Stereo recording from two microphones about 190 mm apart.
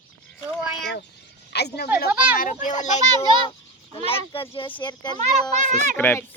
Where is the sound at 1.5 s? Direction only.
60° left (ahead or behind).